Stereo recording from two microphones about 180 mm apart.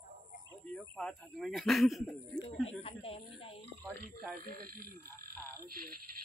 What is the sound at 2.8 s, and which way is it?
Speech, 30° left (ahead or behind).